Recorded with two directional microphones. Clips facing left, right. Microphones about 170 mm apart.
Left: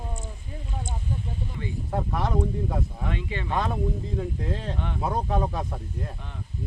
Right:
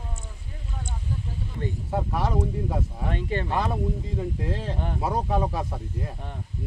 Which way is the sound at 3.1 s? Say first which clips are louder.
Right 6 dB; 40° right (ahead or behind).